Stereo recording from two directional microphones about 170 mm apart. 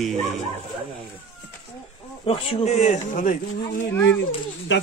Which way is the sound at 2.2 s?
35° left (ahead or behind).